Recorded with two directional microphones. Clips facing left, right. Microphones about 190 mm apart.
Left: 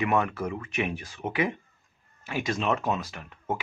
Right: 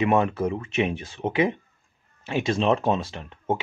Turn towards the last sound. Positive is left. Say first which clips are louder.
# right 5 dB
turn(degrees=-25)  # may be behind; listen again after turning